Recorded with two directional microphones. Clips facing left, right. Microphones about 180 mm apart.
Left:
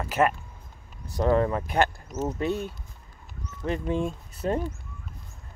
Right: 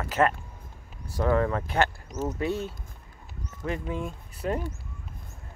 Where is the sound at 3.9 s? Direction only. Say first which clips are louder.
Left 5 dB; 30° left (ahead or behind).